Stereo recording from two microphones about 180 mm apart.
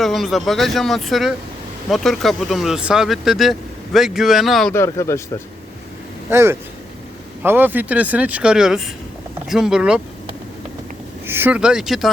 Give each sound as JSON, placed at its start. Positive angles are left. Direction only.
{"t": 0.0, "sound": "speech", "side_deg": 0}
{"t": 4.7, "sound": "speech", "side_deg": 15}
{"t": 6.3, "sound": "speech", "side_deg": -15}
{"t": 11.3, "sound": "speech", "side_deg": -10}